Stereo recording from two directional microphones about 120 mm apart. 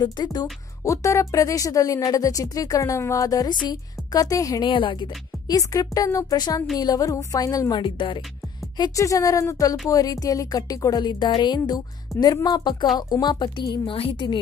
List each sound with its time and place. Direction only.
0.0 s speech: 35° left (ahead or behind)
4.6 s a woman's voice: 45° left (ahead or behind)
5.6 s speech: 30° left (ahead or behind)
7.8 s a woman's voice: 45° left (ahead or behind)
8.7 s speech: 30° left (ahead or behind)